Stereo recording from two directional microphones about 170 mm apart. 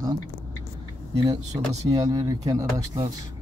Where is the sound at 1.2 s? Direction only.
25° right (ahead or behind).